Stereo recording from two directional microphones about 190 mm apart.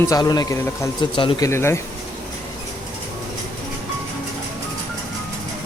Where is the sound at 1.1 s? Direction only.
25° left (ahead or behind).